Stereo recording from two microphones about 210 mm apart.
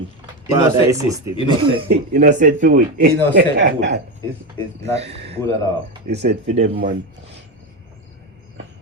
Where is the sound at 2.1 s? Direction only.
35° right (ahead or behind).